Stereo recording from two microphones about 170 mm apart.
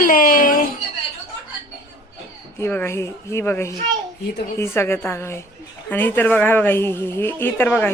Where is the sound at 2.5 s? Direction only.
15° left (ahead or behind).